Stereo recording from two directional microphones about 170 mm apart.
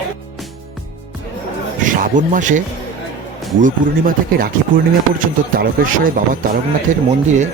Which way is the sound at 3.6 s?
60° right (ahead or behind).